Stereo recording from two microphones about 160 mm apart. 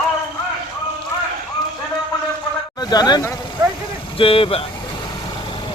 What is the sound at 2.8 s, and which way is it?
Speech, 25° left (ahead or behind).